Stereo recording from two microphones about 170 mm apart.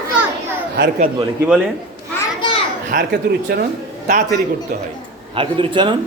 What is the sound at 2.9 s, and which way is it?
Speech, 55° right (ahead or behind).